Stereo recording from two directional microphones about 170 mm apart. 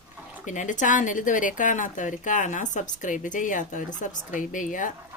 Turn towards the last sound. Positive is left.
turn(degrees=50)  # may be behind; listen again after turning